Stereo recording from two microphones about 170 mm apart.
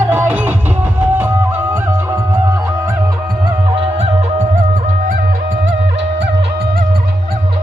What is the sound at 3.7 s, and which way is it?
Music, 40° right (ahead or behind).